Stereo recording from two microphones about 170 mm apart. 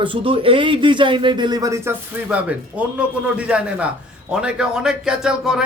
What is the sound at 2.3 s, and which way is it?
A man's voice, 10° right (ahead or behind).